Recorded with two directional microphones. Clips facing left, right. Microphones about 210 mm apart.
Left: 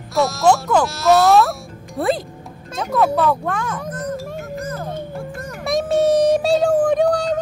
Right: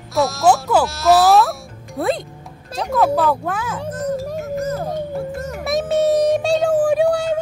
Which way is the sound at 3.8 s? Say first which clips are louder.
Right 3 dB; 30° right (ahead or behind).